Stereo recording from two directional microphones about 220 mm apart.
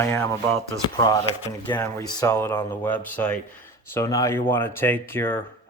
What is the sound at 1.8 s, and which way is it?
Speech, 15° left (ahead or behind).